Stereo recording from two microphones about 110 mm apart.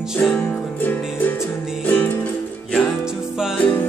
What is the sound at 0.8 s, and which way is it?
Music, 15° left (ahead or behind).